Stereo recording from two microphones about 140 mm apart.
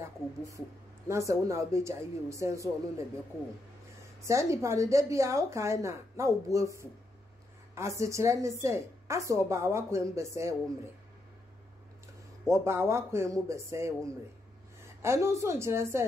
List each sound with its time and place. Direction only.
0.0 s speech: 20° right (ahead or behind)
4.2 s speech: 20° right (ahead or behind)
8.0 s speech: 20° right (ahead or behind)
12.4 s speech: 20° right (ahead or behind)
15.0 s speech: 20° right (ahead or behind)